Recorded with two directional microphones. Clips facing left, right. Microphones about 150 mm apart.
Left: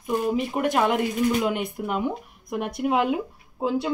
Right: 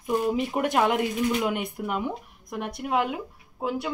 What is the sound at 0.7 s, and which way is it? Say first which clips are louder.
Speech: even; 15° right (ahead or behind).